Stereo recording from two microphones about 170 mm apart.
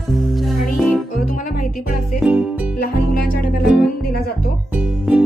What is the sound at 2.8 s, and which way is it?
Music, 60° left (ahead or behind).